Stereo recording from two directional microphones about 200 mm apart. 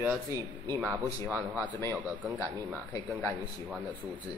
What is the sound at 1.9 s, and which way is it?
Speech, 5° right (ahead or behind).